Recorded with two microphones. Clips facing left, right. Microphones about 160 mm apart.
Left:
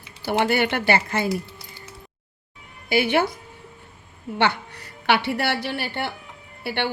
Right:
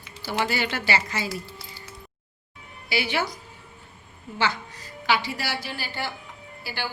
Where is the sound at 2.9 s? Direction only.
50° left (ahead or behind).